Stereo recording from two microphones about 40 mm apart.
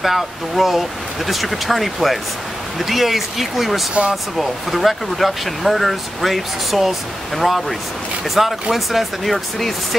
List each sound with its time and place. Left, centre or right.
0.0 s speech: centre